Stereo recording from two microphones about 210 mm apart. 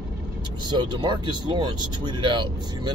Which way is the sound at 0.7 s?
20° right (ahead or behind).